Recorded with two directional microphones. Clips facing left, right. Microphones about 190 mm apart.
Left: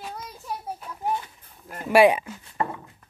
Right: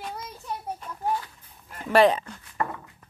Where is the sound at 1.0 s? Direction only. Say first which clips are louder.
Even; 20° left (ahead or behind).